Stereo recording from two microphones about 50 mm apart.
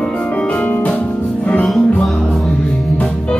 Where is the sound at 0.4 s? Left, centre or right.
Left.